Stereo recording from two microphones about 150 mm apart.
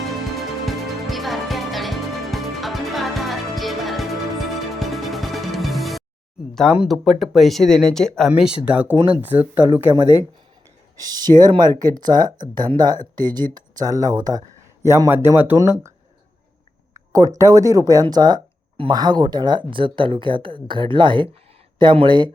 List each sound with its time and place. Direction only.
0.3 s music: centre (ahead or behind)
6.5 s speech: centre (ahead or behind)
8.3 s speech: 5° right (ahead or behind)
10.9 s speech: 25° right (ahead or behind)
17.1 s speech: 20° right (ahead or behind)